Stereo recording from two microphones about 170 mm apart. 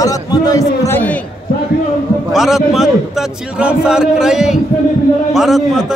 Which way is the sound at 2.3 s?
Centre (ahead or behind).